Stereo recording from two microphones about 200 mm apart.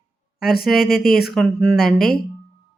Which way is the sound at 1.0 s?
50° left (ahead or behind).